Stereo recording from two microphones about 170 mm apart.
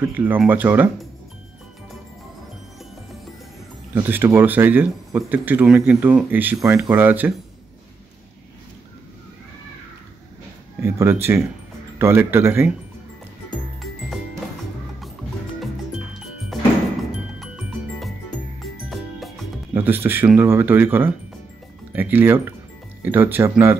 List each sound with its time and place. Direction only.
0.1 s speech: 10° right (ahead or behind)
3.9 s speech: 10° right (ahead or behind)
10.8 s speech: 15° right (ahead or behind)
16.5 s music: centre (ahead or behind)
19.7 s speech: 10° right (ahead or behind)